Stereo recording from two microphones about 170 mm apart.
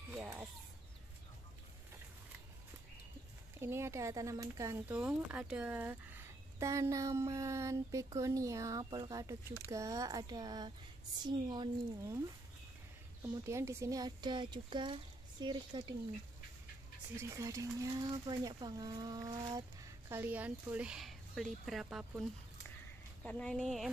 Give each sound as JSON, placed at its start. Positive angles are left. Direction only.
{"t": 0.1, "sound": "a sound", "side_deg": -15}
{"t": 3.5, "sound": "speech", "side_deg": -15}
{"t": 4.9, "sound": "speech", "side_deg": -5}
{"t": 13.2, "sound": "speech", "side_deg": -15}
{"t": 17.2, "sound": "speech", "side_deg": -15}
{"t": 20.1, "sound": "speech", "side_deg": -10}
{"t": 23.2, "sound": "speech", "side_deg": 5}